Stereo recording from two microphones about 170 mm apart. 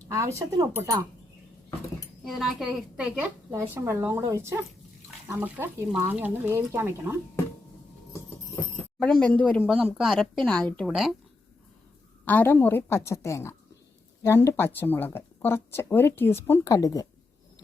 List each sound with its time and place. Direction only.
0.1 s speech: 20° right (ahead or behind)
2.2 s speech: centre (ahead or behind)
3.5 s speech: 15° right (ahead or behind)
9.0 s speech: 5° left (ahead or behind)
12.2 s speech: 10° left (ahead or behind)